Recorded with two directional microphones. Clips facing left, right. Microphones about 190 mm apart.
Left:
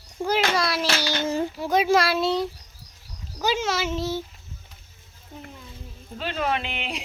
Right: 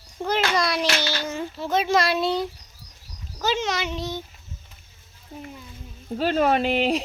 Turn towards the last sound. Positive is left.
turn(degrees=-40)  # may be behind; listen again after turning